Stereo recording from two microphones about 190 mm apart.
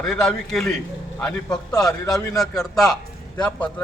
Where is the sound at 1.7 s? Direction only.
20° left (ahead or behind).